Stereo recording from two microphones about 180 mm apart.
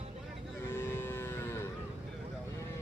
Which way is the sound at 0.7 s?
10° left (ahead or behind).